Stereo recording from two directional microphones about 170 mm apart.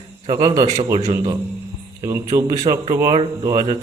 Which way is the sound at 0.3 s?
25° right (ahead or behind).